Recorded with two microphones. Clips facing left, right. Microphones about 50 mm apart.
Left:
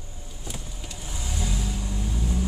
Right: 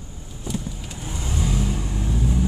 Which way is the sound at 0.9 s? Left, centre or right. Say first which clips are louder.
Right 5 dB; right.